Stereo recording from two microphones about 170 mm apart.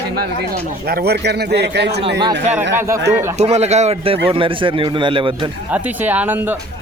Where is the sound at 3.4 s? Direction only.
40° right (ahead or behind).